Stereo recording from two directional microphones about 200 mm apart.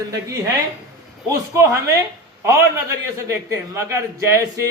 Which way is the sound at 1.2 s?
15° right (ahead or behind).